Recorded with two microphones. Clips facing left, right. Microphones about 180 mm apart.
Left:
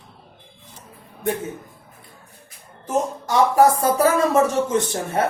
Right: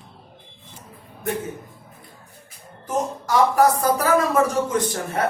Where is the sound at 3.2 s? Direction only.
25° left (ahead or behind).